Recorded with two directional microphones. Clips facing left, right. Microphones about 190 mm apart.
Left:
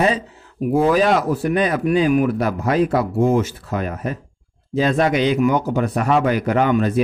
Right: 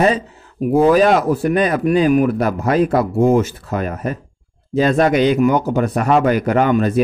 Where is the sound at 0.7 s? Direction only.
50° right (ahead or behind).